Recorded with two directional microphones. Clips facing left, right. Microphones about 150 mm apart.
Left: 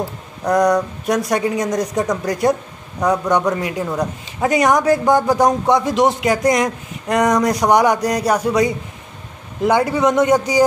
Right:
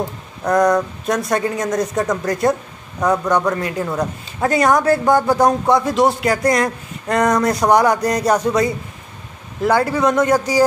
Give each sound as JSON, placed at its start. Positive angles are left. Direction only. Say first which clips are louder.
{"t": 0.0, "sound": "speech", "louder": "even", "side_deg": 15}